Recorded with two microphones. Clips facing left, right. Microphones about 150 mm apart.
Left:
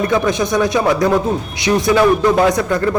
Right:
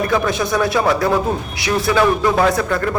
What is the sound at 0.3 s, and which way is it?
A man's voice, 20° left (ahead or behind).